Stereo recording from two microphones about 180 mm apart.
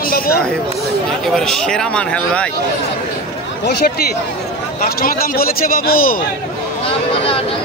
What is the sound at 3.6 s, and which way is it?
A man's voice, 60° left (ahead or behind).